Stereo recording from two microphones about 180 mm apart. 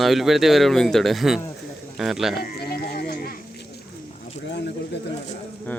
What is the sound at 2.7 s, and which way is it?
Music, 60° left (ahead or behind).